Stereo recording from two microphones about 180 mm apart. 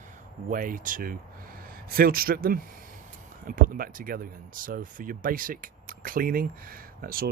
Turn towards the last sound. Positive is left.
turn(degrees=-55)  # may be behind; listen again after turning